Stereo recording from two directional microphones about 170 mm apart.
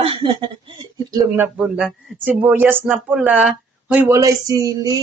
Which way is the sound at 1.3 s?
10° right (ahead or behind).